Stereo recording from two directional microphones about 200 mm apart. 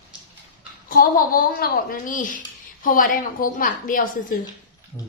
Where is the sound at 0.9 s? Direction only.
45° left (ahead or behind).